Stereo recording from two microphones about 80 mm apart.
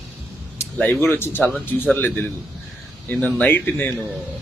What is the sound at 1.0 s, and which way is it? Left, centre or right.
Speech, left.